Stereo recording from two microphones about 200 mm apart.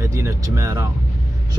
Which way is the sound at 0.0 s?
15° right (ahead or behind).